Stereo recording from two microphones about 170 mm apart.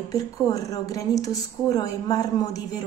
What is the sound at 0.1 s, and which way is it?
A woman's voice, 20° left (ahead or behind).